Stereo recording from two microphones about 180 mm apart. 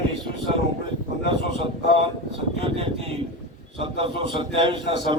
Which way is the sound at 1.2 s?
70° left (ahead or behind).